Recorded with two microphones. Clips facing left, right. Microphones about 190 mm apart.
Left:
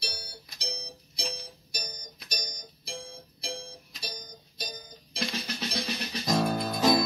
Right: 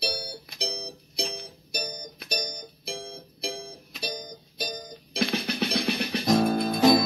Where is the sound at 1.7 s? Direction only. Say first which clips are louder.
Right 9 dB; 55° right (ahead or behind).